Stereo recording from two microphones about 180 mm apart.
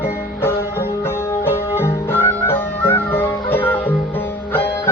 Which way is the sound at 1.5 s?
10° left (ahead or behind).